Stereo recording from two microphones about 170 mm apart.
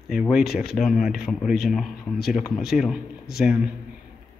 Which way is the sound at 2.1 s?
65° left (ahead or behind).